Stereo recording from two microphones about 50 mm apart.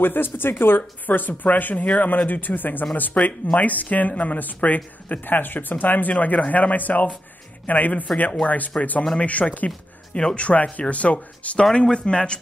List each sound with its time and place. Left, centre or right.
0.0 s speech: left
5.2 s speech: left; by 12.4 s centre